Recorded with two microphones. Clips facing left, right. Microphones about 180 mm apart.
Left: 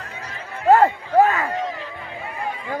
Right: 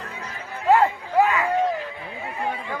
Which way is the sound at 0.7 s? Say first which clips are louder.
Left 3 dB; 45° left (ahead or behind).